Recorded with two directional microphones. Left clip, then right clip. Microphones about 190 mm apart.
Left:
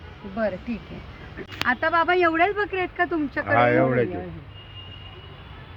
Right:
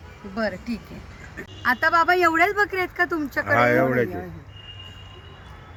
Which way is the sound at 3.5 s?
40° right (ahead or behind).